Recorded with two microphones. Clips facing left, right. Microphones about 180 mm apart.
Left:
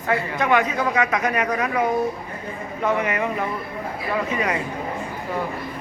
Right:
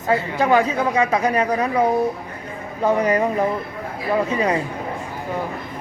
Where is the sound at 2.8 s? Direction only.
35° right (ahead or behind).